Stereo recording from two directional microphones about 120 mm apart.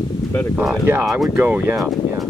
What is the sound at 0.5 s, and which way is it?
Speech, 10° right (ahead or behind).